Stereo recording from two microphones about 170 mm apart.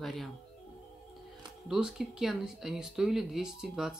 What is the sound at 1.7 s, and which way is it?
Speech, centre (ahead or behind).